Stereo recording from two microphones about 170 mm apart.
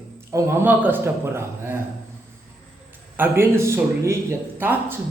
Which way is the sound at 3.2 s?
15° right (ahead or behind).